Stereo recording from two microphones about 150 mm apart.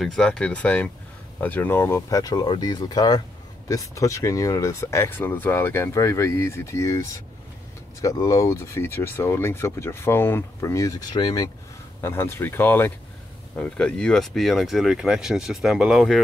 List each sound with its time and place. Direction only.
0.0 s speech: 5° left (ahead or behind); by 11.5 s 25° left (ahead or behind)
12.0 s speech: 15° left (ahead or behind); by 16.2 s centre (ahead or behind)